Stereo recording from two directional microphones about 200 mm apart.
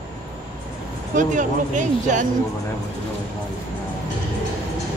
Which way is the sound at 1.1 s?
40° right (ahead or behind).